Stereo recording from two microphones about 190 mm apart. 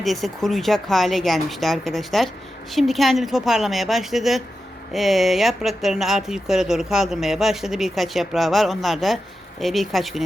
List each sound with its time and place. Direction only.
0.0 s speech: centre (ahead or behind)